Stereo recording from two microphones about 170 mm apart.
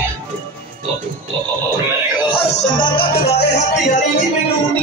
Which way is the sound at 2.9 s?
70° left (ahead or behind).